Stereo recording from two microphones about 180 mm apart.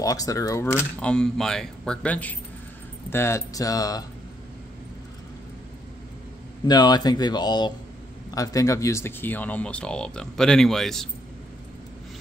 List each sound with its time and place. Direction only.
0.0 s speech: 20° left (ahead or behind)
6.7 s speech: 25° left (ahead or behind); by 11.1 s centre (ahead or behind)